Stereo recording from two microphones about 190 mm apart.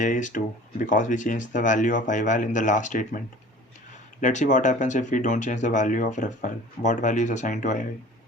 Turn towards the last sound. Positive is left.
turn(degrees=40)  # may be behind; listen again after turning